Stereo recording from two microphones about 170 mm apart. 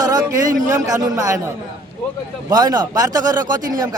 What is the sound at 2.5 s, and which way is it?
Speech, 20° right (ahead or behind).